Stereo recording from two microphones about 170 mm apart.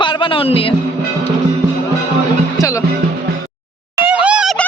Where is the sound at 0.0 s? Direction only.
30° left (ahead or behind).